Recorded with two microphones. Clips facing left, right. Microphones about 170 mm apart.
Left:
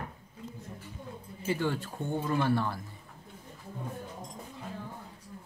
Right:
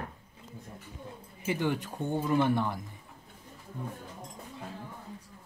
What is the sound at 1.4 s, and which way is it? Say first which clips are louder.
Speech: right 1 dB; 15° right (ahead or behind).